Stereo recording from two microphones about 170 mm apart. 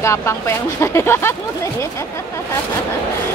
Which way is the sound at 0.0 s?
15° left (ahead or behind).